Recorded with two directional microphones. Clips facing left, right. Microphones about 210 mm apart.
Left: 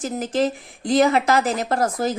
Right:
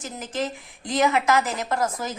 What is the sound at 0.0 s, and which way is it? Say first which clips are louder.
A woman's voice: left 8 dB; 35° left (ahead or behind).